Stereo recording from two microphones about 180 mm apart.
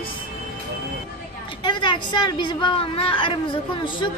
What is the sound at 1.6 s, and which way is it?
A woman's voice, 25° left (ahead or behind).